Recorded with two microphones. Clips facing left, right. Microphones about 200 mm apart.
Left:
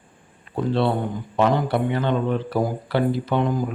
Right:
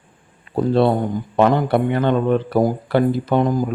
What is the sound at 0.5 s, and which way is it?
Speech, 40° right (ahead or behind).